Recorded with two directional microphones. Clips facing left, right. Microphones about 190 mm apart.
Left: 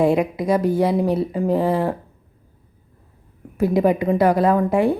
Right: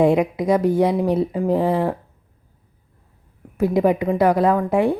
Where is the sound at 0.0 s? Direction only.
20° right (ahead or behind).